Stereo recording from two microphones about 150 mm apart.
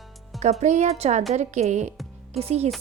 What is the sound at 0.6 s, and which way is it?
A woman's voice, 50° right (ahead or behind).